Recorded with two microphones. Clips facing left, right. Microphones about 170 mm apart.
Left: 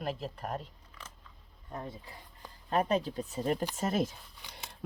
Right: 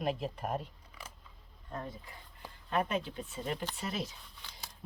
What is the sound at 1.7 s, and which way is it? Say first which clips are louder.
Speech: even; 15° left (ahead or behind).